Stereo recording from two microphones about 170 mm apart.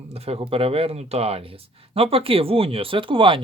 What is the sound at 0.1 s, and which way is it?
Speech, 35° right (ahead or behind).